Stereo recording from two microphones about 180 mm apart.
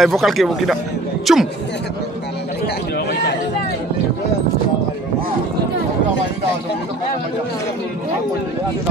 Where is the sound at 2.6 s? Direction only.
65° left (ahead or behind).